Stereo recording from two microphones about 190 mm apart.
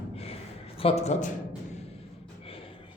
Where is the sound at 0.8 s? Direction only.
30° left (ahead or behind).